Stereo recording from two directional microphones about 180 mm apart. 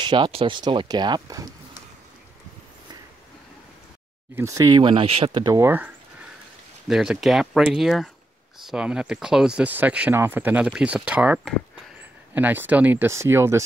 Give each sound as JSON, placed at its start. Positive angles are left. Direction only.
{"t": 0.0, "sound": "speech", "side_deg": -25}
{"t": 4.4, "sound": "speech", "side_deg": -20}
{"t": 6.9, "sound": "speech", "side_deg": 0}